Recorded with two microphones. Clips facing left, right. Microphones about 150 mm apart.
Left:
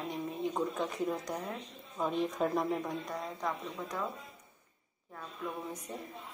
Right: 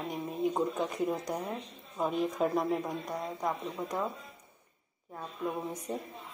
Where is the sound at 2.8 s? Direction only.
15° right (ahead or behind).